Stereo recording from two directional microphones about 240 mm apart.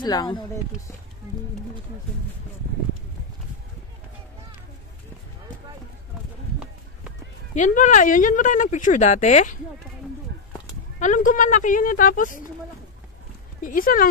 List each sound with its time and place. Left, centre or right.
0.0 s speech: centre
7.5 s speech: left
11.0 s speech: left
13.6 s speech: left